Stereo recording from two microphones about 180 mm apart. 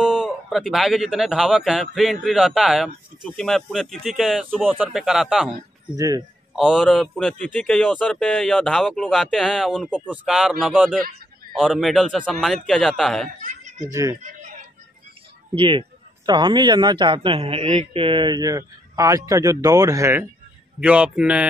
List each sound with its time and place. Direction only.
0.2 s speech: centre (ahead or behind)
5.9 s speech: 20° right (ahead or behind)
6.5 s speech: 5° right (ahead or behind)
13.4 s speech: 40° right (ahead or behind)
14.2 s a sound: 45° right (ahead or behind)
15.5 s speech: 30° right (ahead or behind); by 21.5 s 5° right (ahead or behind)